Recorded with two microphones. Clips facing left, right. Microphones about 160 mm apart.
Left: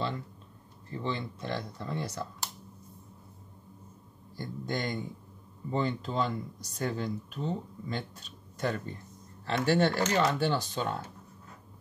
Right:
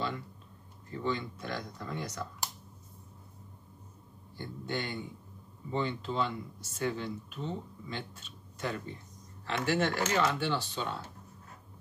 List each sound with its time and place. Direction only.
1.0 s speech: 30° left (ahead or behind)
4.4 s speech: 40° left (ahead or behind)